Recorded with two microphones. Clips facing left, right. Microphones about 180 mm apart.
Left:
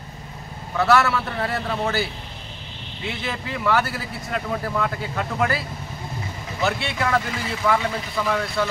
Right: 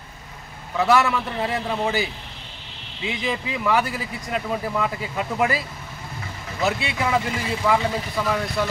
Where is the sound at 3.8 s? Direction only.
15° right (ahead or behind).